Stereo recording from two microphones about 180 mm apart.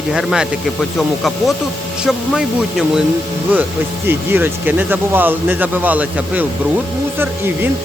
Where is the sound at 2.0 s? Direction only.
5° right (ahead or behind).